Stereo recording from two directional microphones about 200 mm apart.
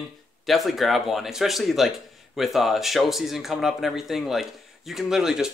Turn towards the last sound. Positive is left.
turn(degrees=0)  # may be behind; listen again after turning